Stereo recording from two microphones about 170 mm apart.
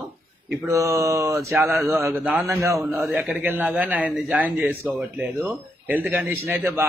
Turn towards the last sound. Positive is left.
turn(degrees=-15)  # may be behind; listen again after turning